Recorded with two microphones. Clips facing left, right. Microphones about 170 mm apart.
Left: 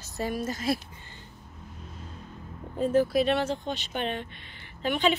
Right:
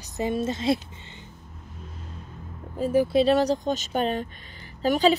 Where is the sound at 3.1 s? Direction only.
35° right (ahead or behind).